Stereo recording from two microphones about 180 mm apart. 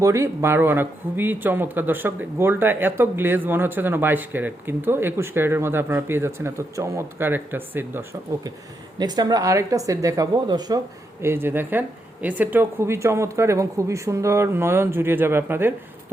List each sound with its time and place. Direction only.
0.0 s speech: 15° right (ahead or behind)
9.0 s speech: 20° right (ahead or behind)